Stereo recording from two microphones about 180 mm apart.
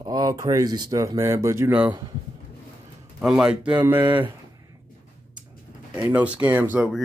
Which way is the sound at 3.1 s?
5° right (ahead or behind).